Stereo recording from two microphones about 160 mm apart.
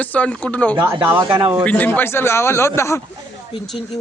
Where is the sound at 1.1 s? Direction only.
25° right (ahead or behind).